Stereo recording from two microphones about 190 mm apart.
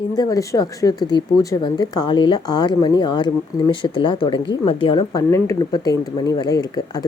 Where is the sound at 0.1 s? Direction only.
20° left (ahead or behind).